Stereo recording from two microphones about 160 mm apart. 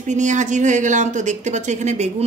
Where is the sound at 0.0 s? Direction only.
50° right (ahead or behind).